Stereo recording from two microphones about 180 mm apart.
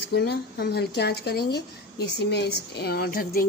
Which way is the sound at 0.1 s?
65° left (ahead or behind).